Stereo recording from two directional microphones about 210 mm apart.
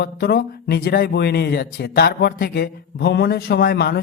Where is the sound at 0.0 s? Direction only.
50° left (ahead or behind).